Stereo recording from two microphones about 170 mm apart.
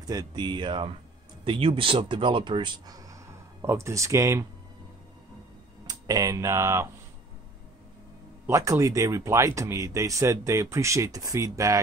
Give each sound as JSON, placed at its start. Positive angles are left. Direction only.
{"t": 0.0, "sound": "speech", "side_deg": -20}
{"t": 5.9, "sound": "speech", "side_deg": -20}
{"t": 8.5, "sound": "speech", "side_deg": -20}